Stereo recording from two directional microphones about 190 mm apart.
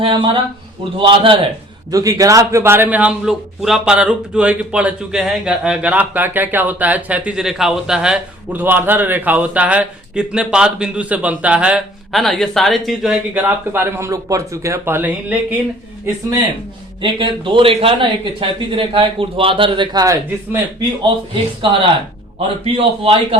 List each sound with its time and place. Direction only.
0.0 s a man's voice: 25° right (ahead or behind); by 15.5 s 10° right (ahead or behind)
17.0 s speech: 25° right (ahead or behind)